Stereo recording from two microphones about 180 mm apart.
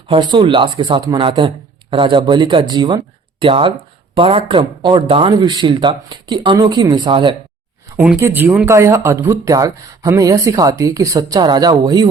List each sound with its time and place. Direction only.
0.1 s speech: 25° right (ahead or behind)
7.9 s speech: 10° right (ahead or behind)